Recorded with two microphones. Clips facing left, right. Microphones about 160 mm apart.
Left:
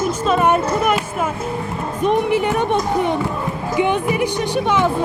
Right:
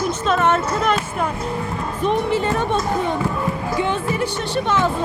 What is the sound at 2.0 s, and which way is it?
Speech, 15° left (ahead or behind).